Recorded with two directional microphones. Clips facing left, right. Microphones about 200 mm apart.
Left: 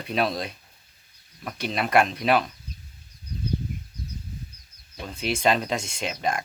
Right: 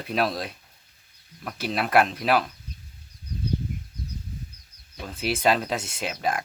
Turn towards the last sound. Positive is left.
turn(degrees=-5)  # may be behind; listen again after turning